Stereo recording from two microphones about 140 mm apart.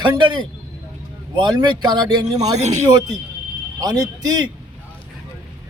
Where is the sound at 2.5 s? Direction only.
55° right (ahead or behind).